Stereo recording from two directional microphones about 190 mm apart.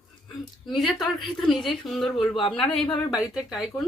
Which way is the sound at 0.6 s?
Centre (ahead or behind).